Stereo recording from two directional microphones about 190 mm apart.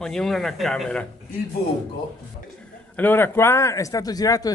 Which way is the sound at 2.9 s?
10° left (ahead or behind).